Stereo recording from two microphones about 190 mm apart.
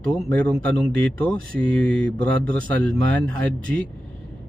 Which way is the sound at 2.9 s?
5° left (ahead or behind).